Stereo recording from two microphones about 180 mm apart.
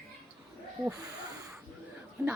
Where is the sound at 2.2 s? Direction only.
10° right (ahead or behind).